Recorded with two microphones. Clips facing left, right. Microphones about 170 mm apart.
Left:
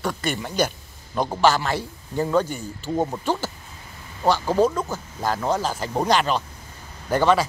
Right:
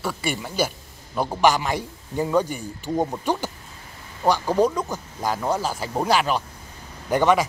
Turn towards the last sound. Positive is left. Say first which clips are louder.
# even
turn(degrees=-15)  # may be behind; listen again after turning